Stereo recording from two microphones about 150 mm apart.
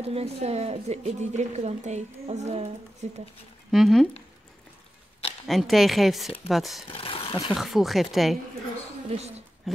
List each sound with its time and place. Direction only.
0.0 s a woman's voice: 45° right (ahead or behind)
3.7 s a woman's voice: centre (ahead or behind)
5.5 s a woman's voice: centre (ahead or behind)
6.9 s a sound: 35° left (ahead or behind)
7.5 s a woman's voice: centre (ahead or behind)
9.1 s a woman's voice: 45° right (ahead or behind)
9.7 s a sound: centre (ahead or behind)